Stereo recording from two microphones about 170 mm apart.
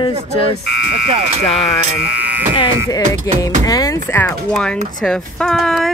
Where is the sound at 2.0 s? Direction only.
5° right (ahead or behind).